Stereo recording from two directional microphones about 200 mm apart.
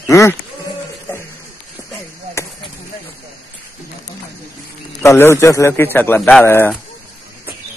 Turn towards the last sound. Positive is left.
turn(degrees=10)  # may be behind; listen again after turning